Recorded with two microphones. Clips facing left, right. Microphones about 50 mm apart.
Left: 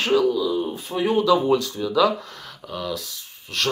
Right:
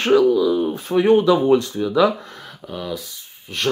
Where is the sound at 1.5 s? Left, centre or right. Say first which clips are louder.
Right 3 dB; right.